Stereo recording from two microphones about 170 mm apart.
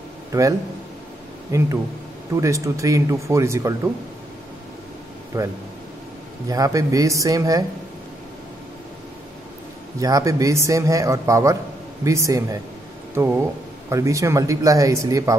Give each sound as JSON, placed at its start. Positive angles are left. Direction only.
{"t": 0.3, "sound": "a man's voice", "side_deg": -20}
{"t": 5.3, "sound": "a man's voice", "side_deg": -20}
{"t": 6.5, "sound": "a man's voice", "side_deg": -20}
{"t": 9.9, "sound": "a man's voice", "side_deg": -20}